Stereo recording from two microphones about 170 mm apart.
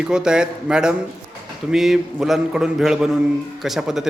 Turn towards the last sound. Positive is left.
turn(degrees=0)  # may be behind; listen again after turning